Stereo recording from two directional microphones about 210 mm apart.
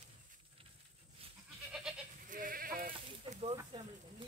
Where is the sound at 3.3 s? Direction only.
30° right (ahead or behind).